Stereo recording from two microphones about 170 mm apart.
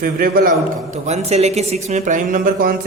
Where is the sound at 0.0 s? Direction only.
60° right (ahead or behind).